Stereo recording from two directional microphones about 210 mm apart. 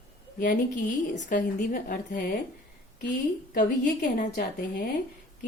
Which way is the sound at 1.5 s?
45° left (ahead or behind).